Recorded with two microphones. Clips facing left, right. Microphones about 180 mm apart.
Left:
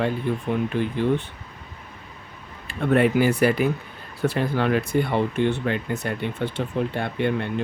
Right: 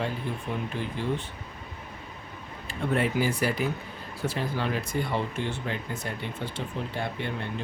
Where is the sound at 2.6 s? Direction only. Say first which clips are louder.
Left 8 dB; 60° left (ahead or behind).